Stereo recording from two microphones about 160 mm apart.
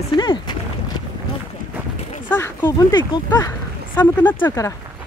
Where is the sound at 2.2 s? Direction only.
15° left (ahead or behind).